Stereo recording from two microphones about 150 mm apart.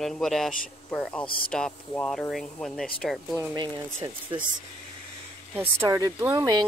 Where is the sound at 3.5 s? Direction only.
30° right (ahead or behind).